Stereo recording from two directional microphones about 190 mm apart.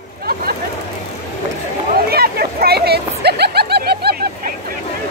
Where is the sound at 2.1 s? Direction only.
55° right (ahead or behind).